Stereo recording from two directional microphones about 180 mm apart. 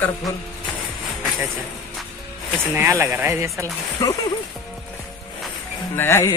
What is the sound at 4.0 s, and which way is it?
Speech, 15° left (ahead or behind).